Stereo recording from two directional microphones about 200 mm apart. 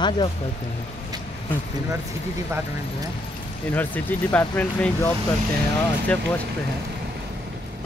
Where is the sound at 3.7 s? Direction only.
10° left (ahead or behind).